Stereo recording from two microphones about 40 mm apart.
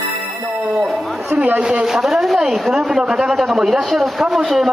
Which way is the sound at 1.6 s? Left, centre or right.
Right.